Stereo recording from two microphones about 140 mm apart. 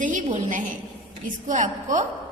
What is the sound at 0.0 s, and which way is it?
A woman's voice, 65° right (ahead or behind).